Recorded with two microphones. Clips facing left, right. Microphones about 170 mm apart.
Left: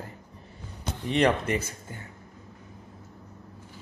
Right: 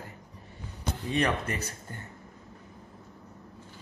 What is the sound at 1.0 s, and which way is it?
Speech, 20° left (ahead or behind).